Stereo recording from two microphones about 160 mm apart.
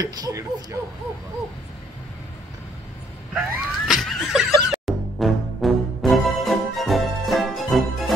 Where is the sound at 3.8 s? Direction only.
Centre (ahead or behind).